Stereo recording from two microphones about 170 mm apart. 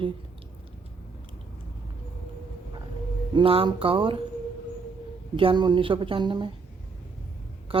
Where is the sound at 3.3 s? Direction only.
30° right (ahead or behind).